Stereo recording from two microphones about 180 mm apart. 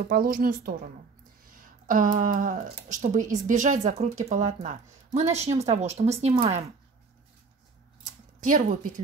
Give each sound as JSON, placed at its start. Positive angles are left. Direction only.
{"t": 0.0, "sound": "a woman's voice", "side_deg": -50}
{"t": 8.5, "sound": "a woman's voice", "side_deg": -45}